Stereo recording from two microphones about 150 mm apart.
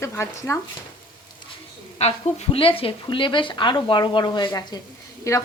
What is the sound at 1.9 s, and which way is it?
Speech, 45° left (ahead or behind).